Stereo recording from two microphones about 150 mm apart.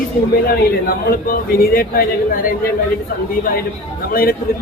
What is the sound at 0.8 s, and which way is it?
A man's voice, 75° left (ahead or behind).